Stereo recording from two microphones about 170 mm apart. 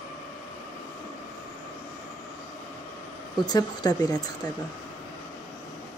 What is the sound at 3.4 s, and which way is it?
Speech, 25° left (ahead or behind).